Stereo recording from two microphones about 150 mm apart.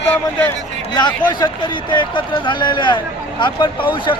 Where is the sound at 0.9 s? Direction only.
30° left (ahead or behind).